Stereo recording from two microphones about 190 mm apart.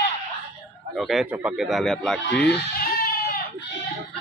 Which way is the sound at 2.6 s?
50° left (ahead or behind).